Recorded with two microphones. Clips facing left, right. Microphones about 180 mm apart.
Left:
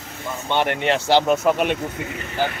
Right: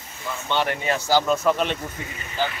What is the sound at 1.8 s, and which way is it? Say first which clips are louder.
Speech: left 6 dB; 65° left (ahead or behind).